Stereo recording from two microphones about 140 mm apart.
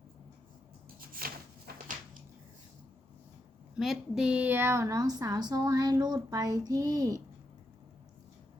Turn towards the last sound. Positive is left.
turn(degrees=-25)  # may be behind; listen again after turning